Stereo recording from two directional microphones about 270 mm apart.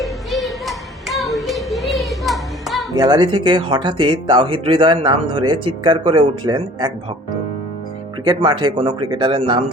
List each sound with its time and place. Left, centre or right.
0.0 s music: centre
2.9 s speech: centre
8.2 s speech: centre